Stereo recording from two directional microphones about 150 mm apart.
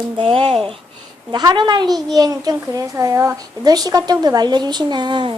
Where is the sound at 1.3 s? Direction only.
30° right (ahead or behind).